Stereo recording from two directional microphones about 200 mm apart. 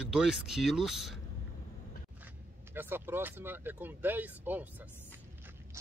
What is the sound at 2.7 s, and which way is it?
Speech, 10° right (ahead or behind).